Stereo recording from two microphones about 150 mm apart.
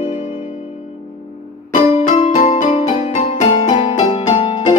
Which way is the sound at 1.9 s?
45° left (ahead or behind).